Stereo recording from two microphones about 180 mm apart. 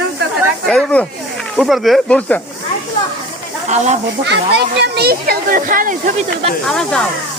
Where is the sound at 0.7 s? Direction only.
5° left (ahead or behind).